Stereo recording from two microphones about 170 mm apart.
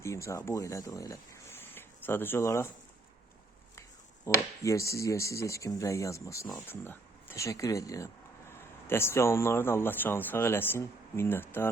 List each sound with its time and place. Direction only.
0.0 s speech: 15° left (ahead or behind)
4.3 s speech: 20° left (ahead or behind)